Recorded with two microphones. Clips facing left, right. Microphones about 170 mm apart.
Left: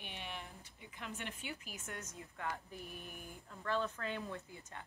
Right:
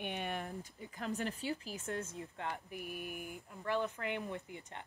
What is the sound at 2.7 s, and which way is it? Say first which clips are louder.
Speech: right 6 dB; 15° right (ahead or behind).